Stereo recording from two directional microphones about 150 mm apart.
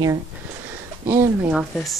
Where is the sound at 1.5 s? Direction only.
Centre (ahead or behind).